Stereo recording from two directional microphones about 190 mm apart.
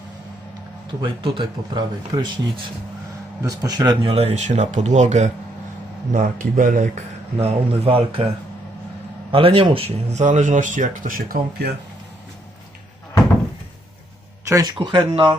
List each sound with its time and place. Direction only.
1.0 s speech: 25° right (ahead or behind); by 7.0 s 45° right (ahead or behind)
7.3 s speech: 30° right (ahead or behind)
9.3 s speech: 30° right (ahead or behind); by 11.7 s 45° right (ahead or behind)
14.4 s speech: 20° right (ahead or behind)